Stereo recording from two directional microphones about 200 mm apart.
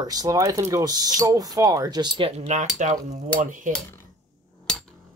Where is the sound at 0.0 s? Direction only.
20° right (ahead or behind); by 3.7 s 40° right (ahead or behind).